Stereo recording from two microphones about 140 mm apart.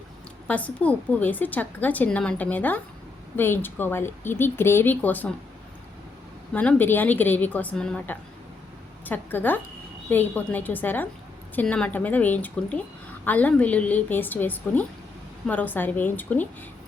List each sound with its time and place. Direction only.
0.4 s a woman's voice: 10° left (ahead or behind)
6.5 s a woman's voice: 10° left (ahead or behind)